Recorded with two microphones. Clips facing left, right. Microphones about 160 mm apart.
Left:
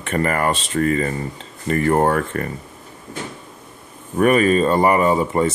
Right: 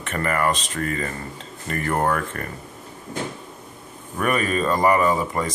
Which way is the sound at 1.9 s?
35° left (ahead or behind).